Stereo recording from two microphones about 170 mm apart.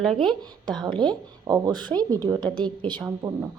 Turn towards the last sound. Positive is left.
turn(degrees=-20)  # may be behind; listen again after turning